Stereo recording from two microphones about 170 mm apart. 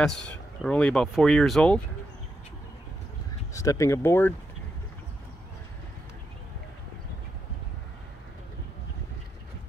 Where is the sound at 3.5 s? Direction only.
20° left (ahead or behind).